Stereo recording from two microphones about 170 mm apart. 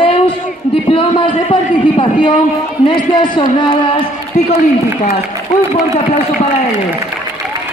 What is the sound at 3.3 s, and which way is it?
Speech, 30° left (ahead or behind).